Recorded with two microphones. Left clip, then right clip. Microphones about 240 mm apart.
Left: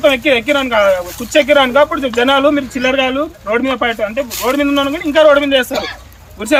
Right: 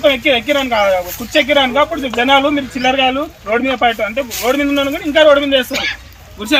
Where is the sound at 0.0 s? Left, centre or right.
Centre.